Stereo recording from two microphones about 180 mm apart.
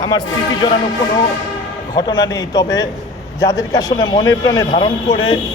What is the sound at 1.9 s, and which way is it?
A man's voice, 25° left (ahead or behind).